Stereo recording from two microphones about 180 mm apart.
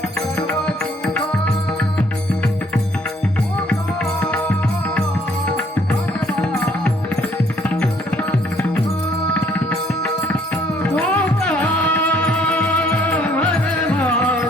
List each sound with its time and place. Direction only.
2.0 s music: 5° left (ahead or behind)
4.2 s music: 10° left (ahead or behind)
7.7 s music: 5° left (ahead or behind)